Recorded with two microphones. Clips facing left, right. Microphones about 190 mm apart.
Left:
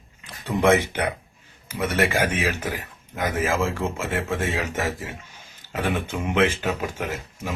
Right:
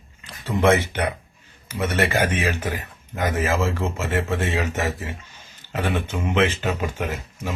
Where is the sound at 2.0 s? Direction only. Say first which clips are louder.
Right 1 dB; 10° left (ahead or behind).